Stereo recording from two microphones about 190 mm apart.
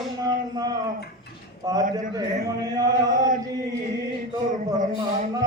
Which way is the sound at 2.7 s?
20° right (ahead or behind).